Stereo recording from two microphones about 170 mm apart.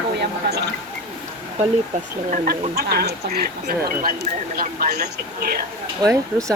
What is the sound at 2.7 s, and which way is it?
Speech, 70° right (ahead or behind).